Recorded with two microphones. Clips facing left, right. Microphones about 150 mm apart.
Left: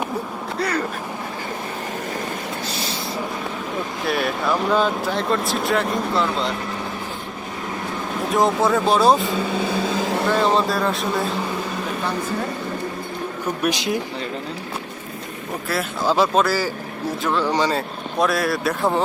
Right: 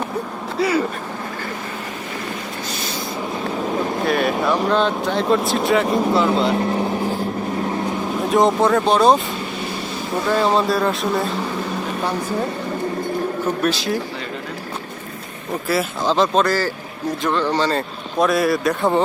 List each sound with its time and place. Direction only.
0.6 s quack: 5° right (ahead or behind)
4.0 s speech: centre (ahead or behind)
8.3 s speech: centre (ahead or behind)
13.6 s speech: 15° left (ahead or behind)
16.0 s speech: 10° left (ahead or behind)
18.2 s speech: centre (ahead or behind)